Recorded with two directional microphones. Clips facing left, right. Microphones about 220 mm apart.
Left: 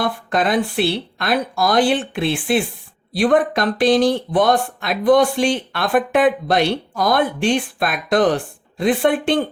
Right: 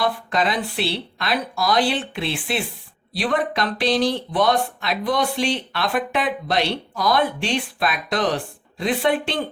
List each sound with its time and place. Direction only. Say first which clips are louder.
0.0 s speech: left 2 dB; 50° left (ahead or behind)